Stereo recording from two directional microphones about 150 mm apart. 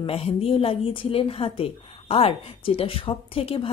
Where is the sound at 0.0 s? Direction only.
40° left (ahead or behind).